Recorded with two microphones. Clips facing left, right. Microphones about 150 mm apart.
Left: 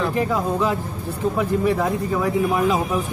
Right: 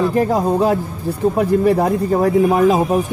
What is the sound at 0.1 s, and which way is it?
A man's voice, 45° right (ahead or behind).